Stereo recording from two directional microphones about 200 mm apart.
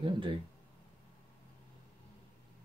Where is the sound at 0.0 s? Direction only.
25° right (ahead or behind).